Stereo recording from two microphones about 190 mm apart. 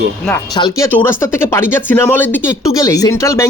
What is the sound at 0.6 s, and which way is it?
Speech, 15° left (ahead or behind).